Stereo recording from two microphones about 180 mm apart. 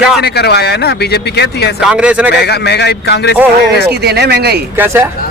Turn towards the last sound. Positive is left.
turn(degrees=-15)  # may be behind; listen again after turning